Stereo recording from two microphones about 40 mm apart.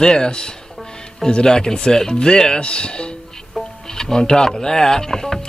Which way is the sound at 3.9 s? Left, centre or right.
Centre.